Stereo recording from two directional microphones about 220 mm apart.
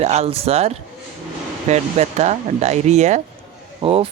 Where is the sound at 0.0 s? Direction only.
30° right (ahead or behind).